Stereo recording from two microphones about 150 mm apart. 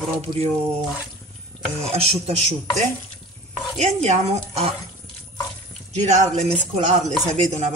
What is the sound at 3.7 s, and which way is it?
Speech, 50° right (ahead or behind).